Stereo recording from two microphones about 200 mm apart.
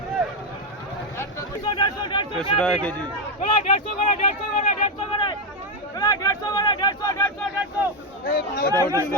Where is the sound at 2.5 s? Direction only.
5° left (ahead or behind).